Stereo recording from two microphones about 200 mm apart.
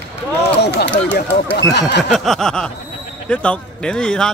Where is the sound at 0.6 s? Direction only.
55° left (ahead or behind).